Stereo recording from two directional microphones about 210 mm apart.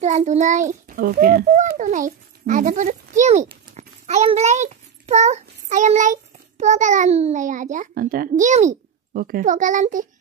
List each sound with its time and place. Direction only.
0.0 s a child's voice: 35° right (ahead or behind)